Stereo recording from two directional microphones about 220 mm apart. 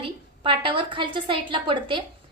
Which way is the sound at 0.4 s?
20° right (ahead or behind).